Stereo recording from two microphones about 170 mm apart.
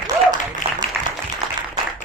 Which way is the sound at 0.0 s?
25° right (ahead or behind).